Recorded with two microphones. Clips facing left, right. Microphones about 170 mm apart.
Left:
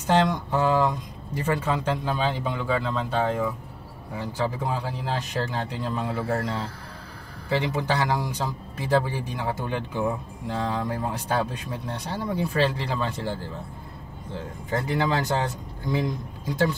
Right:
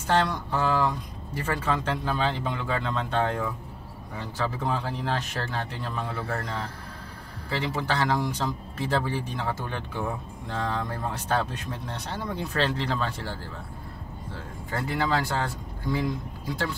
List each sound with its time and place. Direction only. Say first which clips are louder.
0.0 s speech: left 3 dB; 15° left (ahead or behind)
7.4 s speech: left 4 dB; 20° left (ahead or behind)